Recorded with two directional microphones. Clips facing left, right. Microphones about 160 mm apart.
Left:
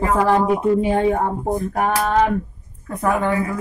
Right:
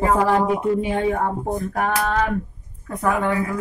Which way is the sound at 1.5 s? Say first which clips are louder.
Left 3 dB; 15° left (ahead or behind).